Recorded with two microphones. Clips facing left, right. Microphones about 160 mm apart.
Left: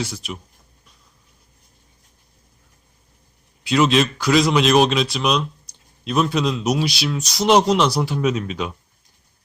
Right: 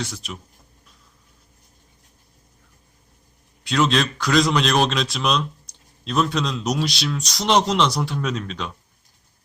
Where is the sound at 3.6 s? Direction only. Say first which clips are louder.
Left 3 dB; 5° left (ahead or behind).